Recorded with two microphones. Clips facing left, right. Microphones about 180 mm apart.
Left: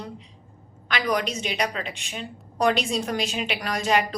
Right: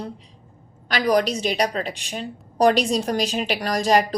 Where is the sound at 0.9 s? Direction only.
35° right (ahead or behind).